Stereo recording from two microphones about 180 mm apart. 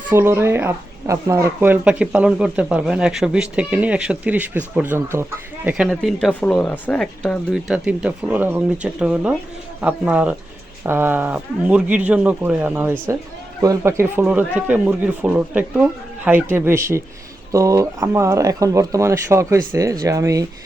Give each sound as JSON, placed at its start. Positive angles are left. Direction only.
{"t": 0.1, "sound": "speech", "side_deg": -15}
{"t": 7.3, "sound": "speech", "side_deg": -5}